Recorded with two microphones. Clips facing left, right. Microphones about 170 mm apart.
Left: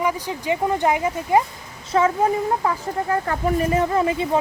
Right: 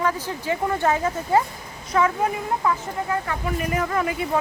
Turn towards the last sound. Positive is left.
turn(degrees=25)  # may be behind; listen again after turning